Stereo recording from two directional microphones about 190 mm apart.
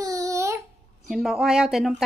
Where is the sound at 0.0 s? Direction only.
15° right (ahead or behind).